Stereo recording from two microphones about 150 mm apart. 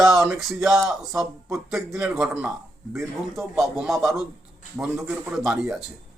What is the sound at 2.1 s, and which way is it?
Speech, 5° right (ahead or behind).